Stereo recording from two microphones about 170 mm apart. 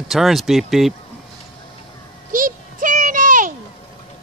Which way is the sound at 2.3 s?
50° right (ahead or behind).